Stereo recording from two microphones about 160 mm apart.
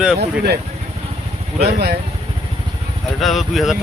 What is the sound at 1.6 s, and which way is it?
Speech, 85° right.